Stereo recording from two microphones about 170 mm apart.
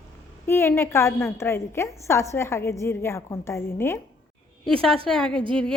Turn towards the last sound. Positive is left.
turn(degrees=5)  # may be behind; listen again after turning